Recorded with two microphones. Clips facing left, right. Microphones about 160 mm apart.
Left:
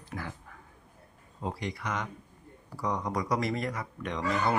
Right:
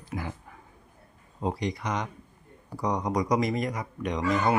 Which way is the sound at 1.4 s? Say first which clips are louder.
Right 5 dB; 20° right (ahead or behind).